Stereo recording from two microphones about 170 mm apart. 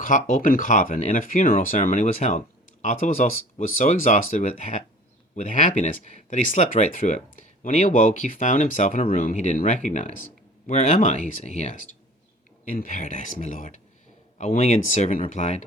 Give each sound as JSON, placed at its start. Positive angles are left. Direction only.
{"t": 0.0, "sound": "speech", "side_deg": 45}